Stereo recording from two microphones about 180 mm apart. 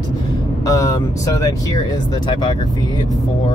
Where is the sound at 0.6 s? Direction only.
20° left (ahead or behind).